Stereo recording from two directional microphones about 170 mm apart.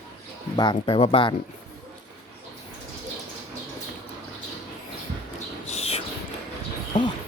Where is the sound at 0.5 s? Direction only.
25° left (ahead or behind).